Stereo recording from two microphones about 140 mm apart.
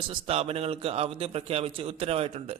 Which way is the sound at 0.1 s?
45° right (ahead or behind).